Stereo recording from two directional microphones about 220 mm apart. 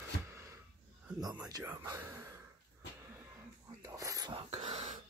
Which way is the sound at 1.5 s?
15° right (ahead or behind).